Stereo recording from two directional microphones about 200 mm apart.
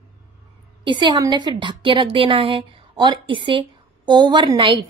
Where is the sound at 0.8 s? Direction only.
25° right (ahead or behind).